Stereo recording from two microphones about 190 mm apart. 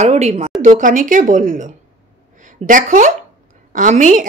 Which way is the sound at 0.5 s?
40° right (ahead or behind).